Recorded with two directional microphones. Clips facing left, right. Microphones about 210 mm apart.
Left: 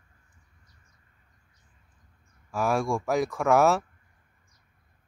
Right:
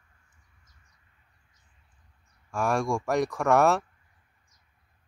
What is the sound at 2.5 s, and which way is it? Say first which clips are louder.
Speech: left 1 dB; centre (ahead or behind).